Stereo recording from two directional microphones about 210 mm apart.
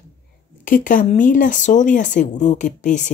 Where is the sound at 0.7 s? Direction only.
40° left (ahead or behind).